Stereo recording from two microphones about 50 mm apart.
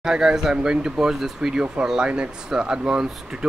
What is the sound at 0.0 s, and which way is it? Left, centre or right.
Speech, centre.